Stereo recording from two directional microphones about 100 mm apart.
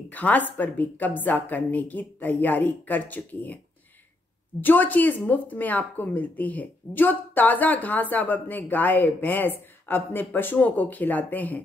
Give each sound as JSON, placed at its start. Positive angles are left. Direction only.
{"t": 0.1, "sound": "speech", "side_deg": 15}
{"t": 4.6, "sound": "speech", "side_deg": 20}